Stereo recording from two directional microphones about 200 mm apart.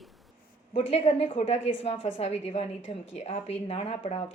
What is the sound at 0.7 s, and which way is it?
A woman's voice, 30° left (ahead or behind).